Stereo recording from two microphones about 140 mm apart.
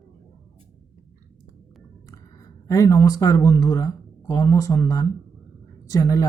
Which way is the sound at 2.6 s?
25° left (ahead or behind).